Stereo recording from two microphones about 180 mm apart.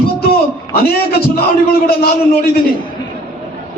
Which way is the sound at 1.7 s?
60° left (ahead or behind).